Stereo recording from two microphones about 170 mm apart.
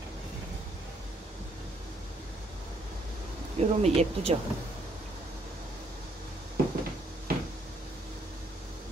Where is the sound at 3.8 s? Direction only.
40° right (ahead or behind).